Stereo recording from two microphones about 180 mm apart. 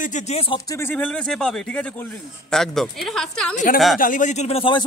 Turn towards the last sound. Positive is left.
turn(degrees=30)  # may be behind; listen again after turning